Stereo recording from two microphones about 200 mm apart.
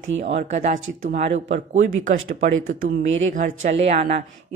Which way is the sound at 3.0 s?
75° right (ahead or behind).